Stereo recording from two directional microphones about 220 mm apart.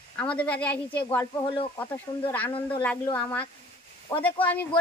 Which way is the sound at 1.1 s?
20° left (ahead or behind).